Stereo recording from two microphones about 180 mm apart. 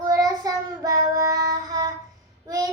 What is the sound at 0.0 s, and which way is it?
Child singing, 20° right (ahead or behind).